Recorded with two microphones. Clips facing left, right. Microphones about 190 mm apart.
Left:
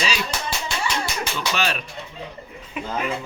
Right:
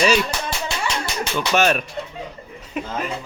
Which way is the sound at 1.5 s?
50° right (ahead or behind).